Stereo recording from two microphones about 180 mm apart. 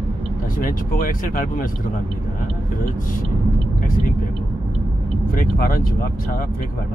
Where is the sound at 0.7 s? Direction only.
50° left (ahead or behind).